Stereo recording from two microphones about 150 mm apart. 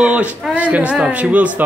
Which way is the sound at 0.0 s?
5° right (ahead or behind).